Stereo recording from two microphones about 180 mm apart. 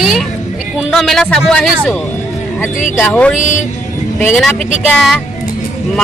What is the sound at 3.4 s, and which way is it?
Speech, 45° left (ahead or behind).